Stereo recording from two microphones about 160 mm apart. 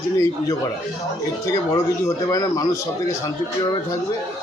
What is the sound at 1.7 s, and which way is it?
Speech, 20° left (ahead or behind).